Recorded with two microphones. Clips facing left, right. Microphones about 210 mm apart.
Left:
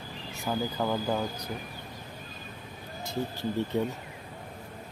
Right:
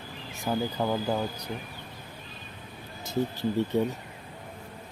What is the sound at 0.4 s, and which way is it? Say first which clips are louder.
Speech: right 2 dB; 10° right (ahead or behind).